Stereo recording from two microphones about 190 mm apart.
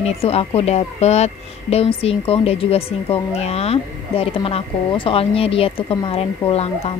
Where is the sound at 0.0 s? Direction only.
30° left (ahead or behind).